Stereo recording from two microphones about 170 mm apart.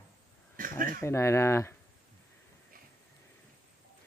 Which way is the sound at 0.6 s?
55° right (ahead or behind).